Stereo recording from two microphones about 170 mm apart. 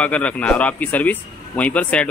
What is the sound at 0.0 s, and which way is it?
Speech, 10° left (ahead or behind).